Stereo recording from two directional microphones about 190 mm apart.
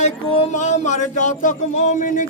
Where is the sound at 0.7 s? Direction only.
40° left (ahead or behind).